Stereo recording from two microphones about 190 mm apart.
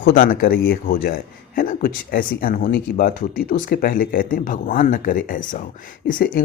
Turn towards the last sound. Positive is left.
turn(degrees=45)  # may be behind; listen again after turning